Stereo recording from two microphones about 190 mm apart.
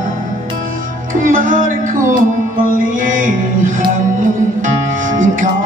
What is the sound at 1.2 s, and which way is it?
Music, 45° right (ahead or behind).